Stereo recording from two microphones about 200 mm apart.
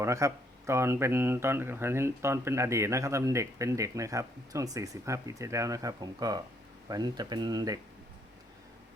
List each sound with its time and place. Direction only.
0.0 s speech: 15° right (ahead or behind)